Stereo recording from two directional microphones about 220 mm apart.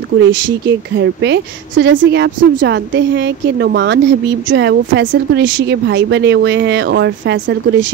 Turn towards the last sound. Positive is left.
turn(degrees=-55)  # may be behind; listen again after turning